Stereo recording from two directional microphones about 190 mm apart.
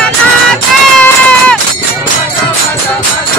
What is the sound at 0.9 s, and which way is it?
Run, 5° left (ahead or behind).